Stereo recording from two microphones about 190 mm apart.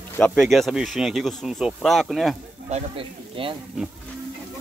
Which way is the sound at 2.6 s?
35° right (ahead or behind).